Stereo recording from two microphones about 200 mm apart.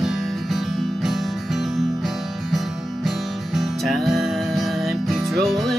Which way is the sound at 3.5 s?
Centre (ahead or behind).